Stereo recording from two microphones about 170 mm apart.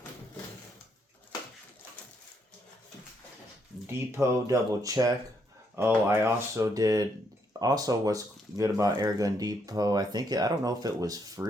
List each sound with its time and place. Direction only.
3.8 s speech: 20° right (ahead or behind)